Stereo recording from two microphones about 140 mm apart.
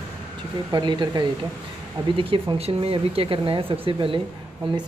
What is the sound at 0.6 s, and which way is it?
Speech, 30° right (ahead or behind).